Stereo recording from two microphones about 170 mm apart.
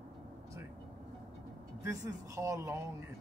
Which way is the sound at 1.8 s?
15° right (ahead or behind).